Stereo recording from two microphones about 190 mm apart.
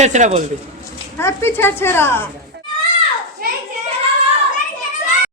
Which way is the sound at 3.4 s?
50° right (ahead or behind).